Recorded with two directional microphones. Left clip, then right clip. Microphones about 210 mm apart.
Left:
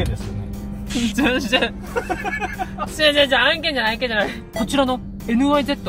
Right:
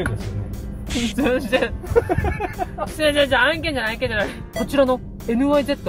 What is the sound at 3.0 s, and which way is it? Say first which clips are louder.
Speech: left 2 dB; 15° left (ahead or behind).